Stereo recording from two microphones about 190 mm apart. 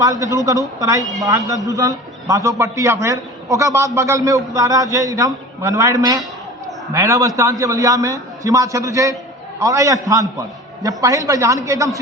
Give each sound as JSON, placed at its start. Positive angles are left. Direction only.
{"t": 0.0, "sound": "a man's voice", "side_deg": -15}